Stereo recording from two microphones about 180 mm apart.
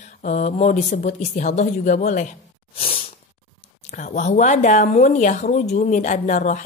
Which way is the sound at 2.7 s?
30° left (ahead or behind).